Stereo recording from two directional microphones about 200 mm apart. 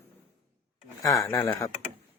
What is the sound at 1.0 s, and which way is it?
Speech, 15° left (ahead or behind).